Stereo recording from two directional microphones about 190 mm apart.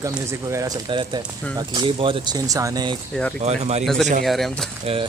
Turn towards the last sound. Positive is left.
turn(degrees=0)  # may be behind; listen again after turning